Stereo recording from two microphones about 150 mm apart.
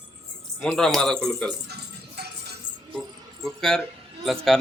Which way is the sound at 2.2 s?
90° right.